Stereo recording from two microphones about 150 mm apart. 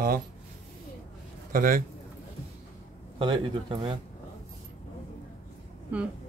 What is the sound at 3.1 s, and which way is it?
Speech, 35° right (ahead or behind).